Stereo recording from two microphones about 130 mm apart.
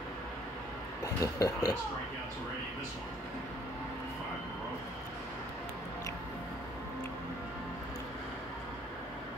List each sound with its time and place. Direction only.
1.0 s speech: 25° left (ahead or behind)